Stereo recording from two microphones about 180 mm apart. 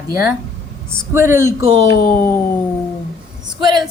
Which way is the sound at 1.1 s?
15° right (ahead or behind).